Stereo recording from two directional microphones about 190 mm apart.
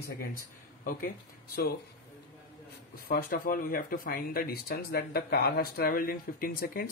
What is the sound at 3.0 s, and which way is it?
Speech, 50° left (ahead or behind).